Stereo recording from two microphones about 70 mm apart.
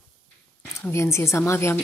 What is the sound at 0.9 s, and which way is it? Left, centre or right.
Speech, left.